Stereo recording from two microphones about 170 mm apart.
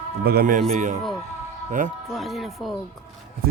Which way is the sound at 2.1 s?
Centre (ahead or behind).